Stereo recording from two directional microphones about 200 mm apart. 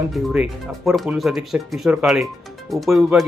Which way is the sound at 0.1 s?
Centre (ahead or behind).